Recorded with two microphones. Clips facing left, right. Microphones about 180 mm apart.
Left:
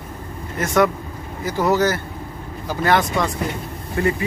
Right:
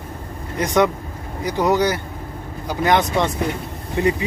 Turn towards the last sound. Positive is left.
turn(degrees=-20)  # may be behind; listen again after turning